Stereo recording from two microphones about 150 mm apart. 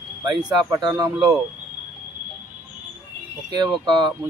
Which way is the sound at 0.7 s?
25° right (ahead or behind).